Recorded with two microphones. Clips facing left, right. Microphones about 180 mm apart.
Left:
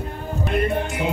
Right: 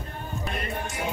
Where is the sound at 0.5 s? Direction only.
60° left (ahead or behind).